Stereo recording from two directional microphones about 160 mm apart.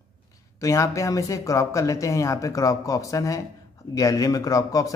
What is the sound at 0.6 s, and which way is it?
A man's voice, 20° left (ahead or behind).